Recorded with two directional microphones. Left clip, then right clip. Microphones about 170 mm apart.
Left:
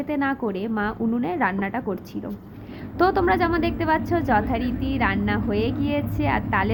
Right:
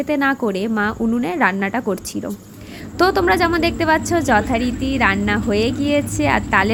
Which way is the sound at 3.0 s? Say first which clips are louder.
Right 4 dB; 25° right (ahead or behind).